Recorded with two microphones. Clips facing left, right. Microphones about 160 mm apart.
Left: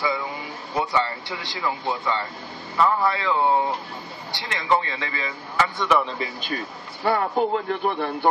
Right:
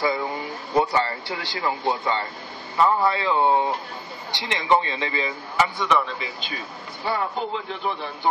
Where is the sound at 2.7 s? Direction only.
25° right (ahead or behind).